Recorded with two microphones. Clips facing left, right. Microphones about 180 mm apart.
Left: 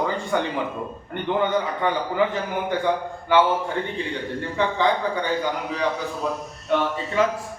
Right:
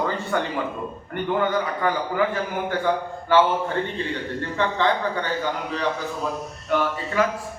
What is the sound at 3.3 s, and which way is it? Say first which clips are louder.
Speech: right 1 dB; 15° left (ahead or behind).